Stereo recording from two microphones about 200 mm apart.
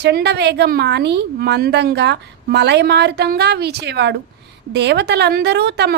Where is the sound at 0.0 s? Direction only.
55° right (ahead or behind).